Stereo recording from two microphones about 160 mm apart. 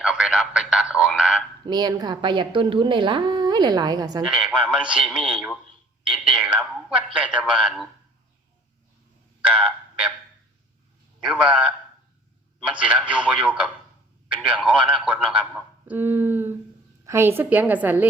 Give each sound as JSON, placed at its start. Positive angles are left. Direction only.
{"t": 0.0, "sound": "speech", "side_deg": -5}
{"t": 1.6, "sound": "a woman's voice", "side_deg": -25}
{"t": 4.3, "sound": "a man's voice", "side_deg": -5}
{"t": 9.5, "sound": "a sound", "side_deg": -5}
{"t": 11.2, "sound": "a man's voice", "side_deg": -10}